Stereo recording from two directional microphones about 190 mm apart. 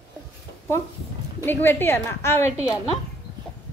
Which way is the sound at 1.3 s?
10° left (ahead or behind).